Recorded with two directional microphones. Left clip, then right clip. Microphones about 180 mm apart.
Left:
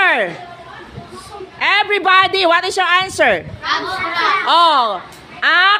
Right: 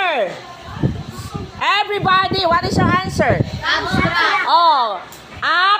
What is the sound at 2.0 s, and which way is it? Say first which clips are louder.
Speech: left 4 dB; 75° left (ahead or behind).